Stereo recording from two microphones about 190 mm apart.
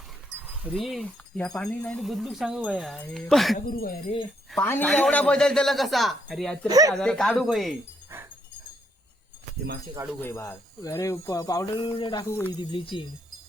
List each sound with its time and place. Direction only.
0.6 s speech: centre (ahead or behind)
3.7 s speech: 50° left (ahead or behind)
4.5 s speech: 10° left (ahead or behind)
6.7 s speech: 20° right (ahead or behind)
6.9 s speech: 5° left (ahead or behind)
10.2 s speech: 15° left (ahead or behind)